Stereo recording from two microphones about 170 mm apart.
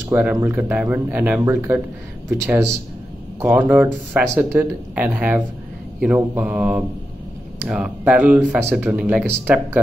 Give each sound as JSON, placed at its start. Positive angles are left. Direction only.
{"t": 0.1, "sound": "speech", "side_deg": -10}